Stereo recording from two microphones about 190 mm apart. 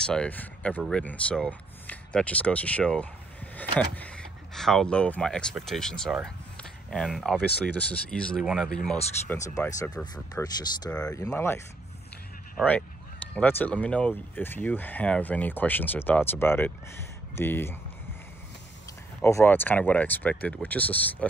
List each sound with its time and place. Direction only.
0.0 s speech: 5° left (ahead or behind)
9.6 s speech: 15° left (ahead or behind)
19.2 s speech: 10° left (ahead or behind)